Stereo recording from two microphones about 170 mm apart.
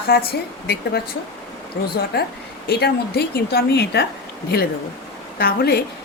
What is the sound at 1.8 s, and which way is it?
Speech, 90° left.